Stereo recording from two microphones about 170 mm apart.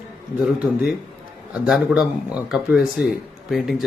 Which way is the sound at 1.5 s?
5° right (ahead or behind).